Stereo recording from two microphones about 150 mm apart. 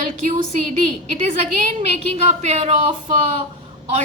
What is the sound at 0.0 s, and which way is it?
A woman's voice, 50° right (ahead or behind).